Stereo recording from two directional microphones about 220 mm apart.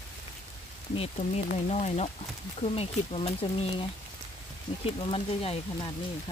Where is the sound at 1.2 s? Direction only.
35° left (ahead or behind).